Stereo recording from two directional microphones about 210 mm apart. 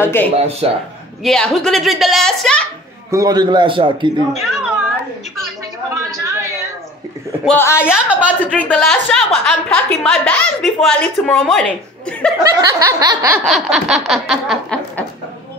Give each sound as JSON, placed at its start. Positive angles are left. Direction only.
{"t": 0.0, "sound": "a man's voice", "side_deg": 10}
{"t": 0.6, "sound": "a man's voice", "side_deg": -25}
{"t": 1.2, "sound": "a woman's voice", "side_deg": 0}
{"t": 3.1, "sound": "a man's voice", "side_deg": -15}
{"t": 4.4, "sound": "speech", "side_deg": -5}
{"t": 6.0, "sound": "a sound", "side_deg": -15}
{"t": 7.4, "sound": "a man's voice", "side_deg": 10}
{"t": 12.6, "sound": "snicker", "side_deg": -15}
{"t": 13.4, "sound": "a woman's voice", "side_deg": 0}